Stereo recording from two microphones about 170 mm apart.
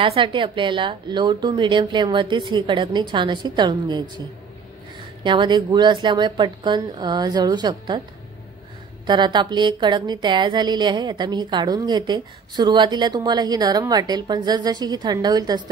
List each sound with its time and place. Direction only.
0.0 s a woman's voice: 30° right (ahead or behind)
5.2 s a woman's voice: 25° right (ahead or behind)
9.0 s a woman's voice: 25° right (ahead or behind)